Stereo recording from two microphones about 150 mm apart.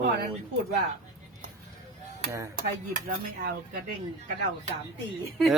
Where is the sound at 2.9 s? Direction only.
65° right (ahead or behind).